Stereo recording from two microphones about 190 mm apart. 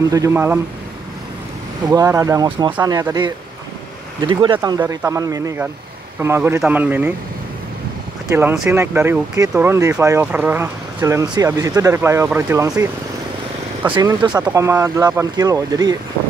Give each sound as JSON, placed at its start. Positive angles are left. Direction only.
{"t": 0.1, "sound": "speech", "side_deg": -15}
{"t": 1.9, "sound": "speech", "side_deg": -20}
{"t": 8.3, "sound": "speech", "side_deg": -10}
{"t": 13.9, "sound": "speech", "side_deg": -20}